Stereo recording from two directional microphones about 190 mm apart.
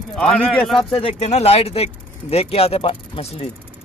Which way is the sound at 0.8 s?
30° left (ahead or behind).